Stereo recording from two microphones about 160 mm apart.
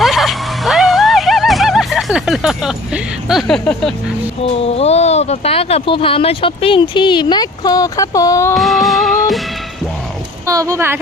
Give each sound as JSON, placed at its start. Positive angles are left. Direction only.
{"t": 0.0, "sound": "vehicle", "side_deg": 0}
{"t": 4.6, "sound": "speech", "side_deg": 40}
{"t": 8.5, "sound": "music", "side_deg": 0}
{"t": 10.4, "sound": "speech", "side_deg": -20}